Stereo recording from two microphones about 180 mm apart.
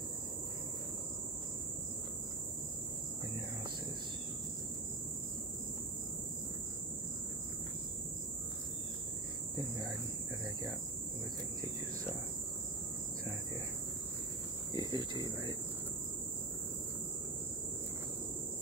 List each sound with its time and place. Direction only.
14.7 s speech: 25° right (ahead or behind)